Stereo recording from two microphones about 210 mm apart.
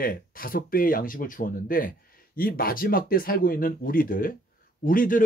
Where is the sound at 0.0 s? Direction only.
45° left (ahead or behind).